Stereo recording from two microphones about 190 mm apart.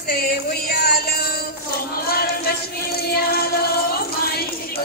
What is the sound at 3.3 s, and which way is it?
Music, 55° left (ahead or behind).